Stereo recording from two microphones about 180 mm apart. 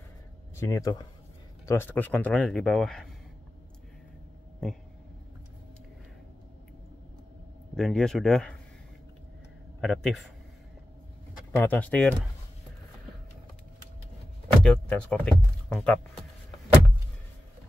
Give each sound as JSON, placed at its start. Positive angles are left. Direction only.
{"t": 0.6, "sound": "speech", "side_deg": 20}
{"t": 7.7, "sound": "speech", "side_deg": 5}
{"t": 9.8, "sound": "speech", "side_deg": 0}
{"t": 11.5, "sound": "speech", "side_deg": 10}
{"t": 14.6, "sound": "speech", "side_deg": 5}